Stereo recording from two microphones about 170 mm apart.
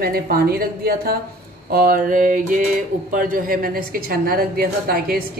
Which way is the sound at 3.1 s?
55° right (ahead or behind).